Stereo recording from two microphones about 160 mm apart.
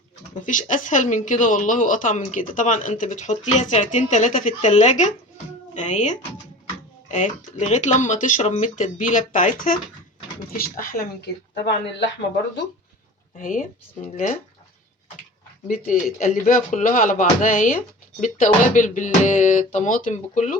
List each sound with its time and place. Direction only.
0.4 s speech: 55° left (ahead or behind)
11.5 s speech: 90° left
13.3 s speech: 55° left (ahead or behind)
15.6 s speech: 55° left (ahead or behind)